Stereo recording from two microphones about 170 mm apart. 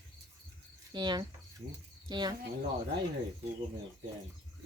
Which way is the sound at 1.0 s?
25° right (ahead or behind).